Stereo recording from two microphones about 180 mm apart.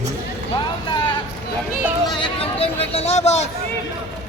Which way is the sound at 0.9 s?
25° left (ahead or behind).